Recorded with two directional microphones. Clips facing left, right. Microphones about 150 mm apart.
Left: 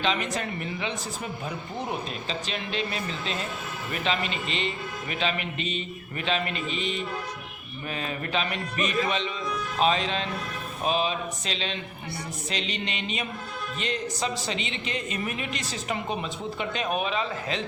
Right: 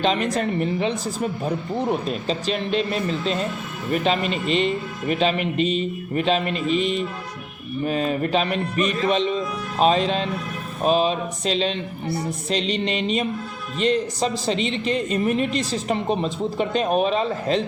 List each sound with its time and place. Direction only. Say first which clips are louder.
0.0 s a woman's voice: right 6 dB; 40° right (ahead or behind)
2.0 s a woman's voice: right 9 dB; 40° right (ahead or behind)
7.9 s a woman's voice: right 9 dB; 40° right (ahead or behind)